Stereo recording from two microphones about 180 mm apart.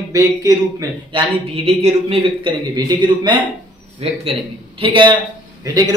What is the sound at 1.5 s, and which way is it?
Speech, 35° right (ahead or behind).